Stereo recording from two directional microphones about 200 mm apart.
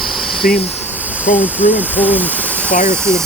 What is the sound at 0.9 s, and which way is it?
Speech, 5° right (ahead or behind).